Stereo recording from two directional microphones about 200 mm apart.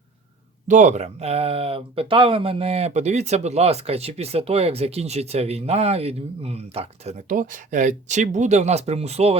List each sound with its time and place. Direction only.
0.7 s speech: 35° right (ahead or behind)